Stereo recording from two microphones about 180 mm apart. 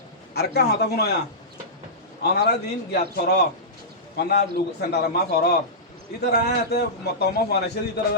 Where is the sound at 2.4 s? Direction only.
65° left (ahead or behind).